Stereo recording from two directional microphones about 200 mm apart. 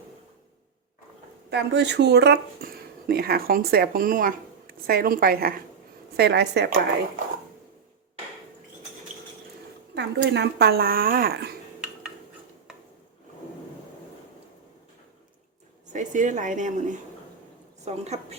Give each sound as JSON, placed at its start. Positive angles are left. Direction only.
{"t": 1.5, "sound": "a woman's voice", "side_deg": -60}
{"t": 9.9, "sound": "speech", "side_deg": -60}
{"t": 15.9, "sound": "speech", "side_deg": -40}